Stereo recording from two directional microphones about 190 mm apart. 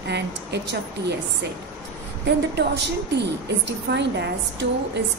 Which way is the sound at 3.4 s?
65° right (ahead or behind).